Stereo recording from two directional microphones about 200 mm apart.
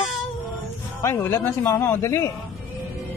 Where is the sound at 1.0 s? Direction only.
15° left (ahead or behind).